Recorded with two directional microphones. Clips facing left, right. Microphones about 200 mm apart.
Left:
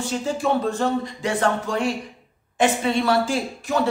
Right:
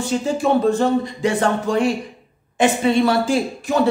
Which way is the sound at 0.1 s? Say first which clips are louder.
Right 5 dB; 15° right (ahead or behind).